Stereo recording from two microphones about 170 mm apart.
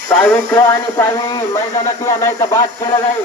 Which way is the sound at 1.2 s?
25° left (ahead or behind).